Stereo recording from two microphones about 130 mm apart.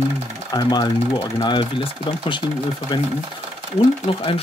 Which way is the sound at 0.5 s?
35° left (ahead or behind).